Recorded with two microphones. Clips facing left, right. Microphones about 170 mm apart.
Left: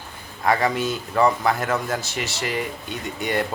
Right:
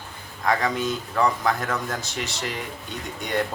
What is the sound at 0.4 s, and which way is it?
Speech, 5° left (ahead or behind).